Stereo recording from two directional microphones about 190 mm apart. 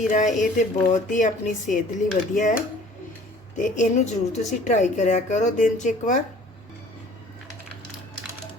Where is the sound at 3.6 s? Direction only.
40° left (ahead or behind).